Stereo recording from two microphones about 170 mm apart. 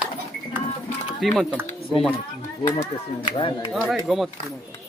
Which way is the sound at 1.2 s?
Centre (ahead or behind).